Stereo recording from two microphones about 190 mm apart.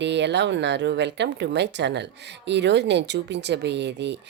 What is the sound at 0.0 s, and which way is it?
Speech, 65° right (ahead or behind).